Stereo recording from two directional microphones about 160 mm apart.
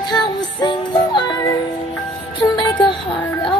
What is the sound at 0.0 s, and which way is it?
Music, 25° left (ahead or behind).